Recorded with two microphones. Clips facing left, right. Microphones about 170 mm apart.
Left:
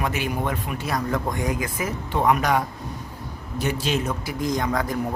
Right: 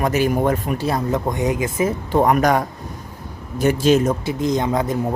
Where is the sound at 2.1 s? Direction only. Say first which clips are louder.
Right 4 dB; 45° right (ahead or behind).